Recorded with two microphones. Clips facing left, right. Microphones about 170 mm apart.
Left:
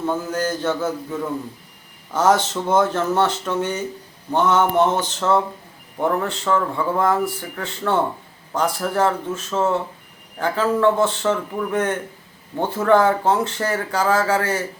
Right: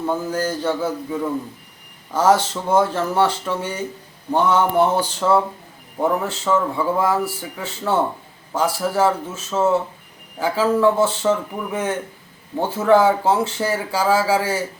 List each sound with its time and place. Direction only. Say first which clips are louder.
0.0 s speech: right 1 dB; 10° right (ahead or behind)